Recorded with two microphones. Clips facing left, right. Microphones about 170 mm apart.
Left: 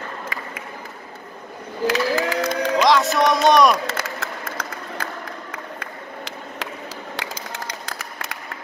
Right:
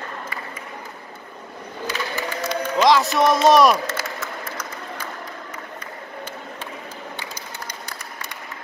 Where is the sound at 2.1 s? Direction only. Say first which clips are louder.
Left 6 dB; 90° left.